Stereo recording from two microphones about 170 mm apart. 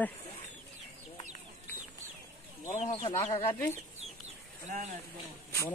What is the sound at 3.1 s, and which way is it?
Speech, 15° left (ahead or behind).